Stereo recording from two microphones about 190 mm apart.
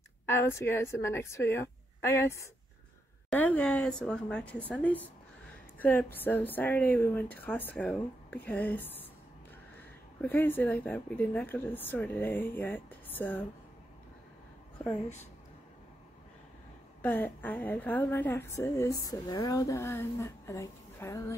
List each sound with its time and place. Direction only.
0.3 s a woman's voice: 15° left (ahead or behind)
17.0 s speech: 10° left (ahead or behind)